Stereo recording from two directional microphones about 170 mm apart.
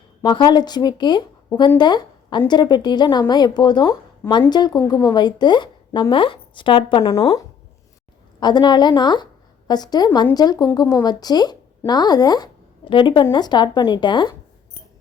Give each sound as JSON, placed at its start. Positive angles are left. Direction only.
{"t": 0.2, "sound": "a woman's voice", "side_deg": 25}